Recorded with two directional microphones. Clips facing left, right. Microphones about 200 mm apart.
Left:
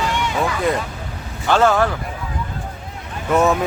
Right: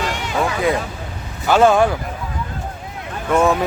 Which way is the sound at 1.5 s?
15° right (ahead or behind).